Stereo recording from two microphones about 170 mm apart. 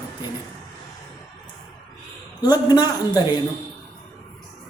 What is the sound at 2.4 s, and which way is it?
A woman's voice, 25° left (ahead or behind).